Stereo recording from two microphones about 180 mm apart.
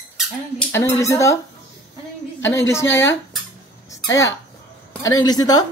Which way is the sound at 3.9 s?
20° left (ahead or behind).